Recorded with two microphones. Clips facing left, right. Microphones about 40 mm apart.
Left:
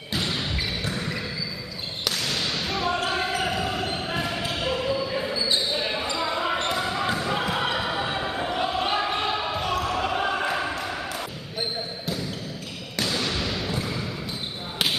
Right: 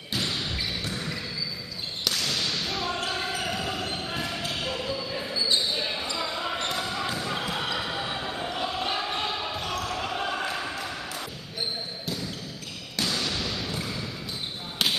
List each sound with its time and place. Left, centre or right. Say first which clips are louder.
0.1 s basketball bounce: left 2 dB; centre
2.0 s whip: left 1 dB; centre
3.1 s basketball bounce: left 4 dB; centre
12.9 s basketball bounce: left 2 dB; centre